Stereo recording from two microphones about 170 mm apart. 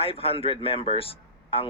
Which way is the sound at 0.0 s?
35° left (ahead or behind).